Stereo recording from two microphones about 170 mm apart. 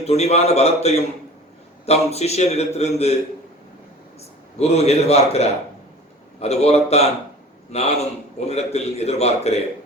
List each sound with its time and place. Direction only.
0.0 s a man's voice: 40° left (ahead or behind)
4.5 s a man's voice: 40° left (ahead or behind)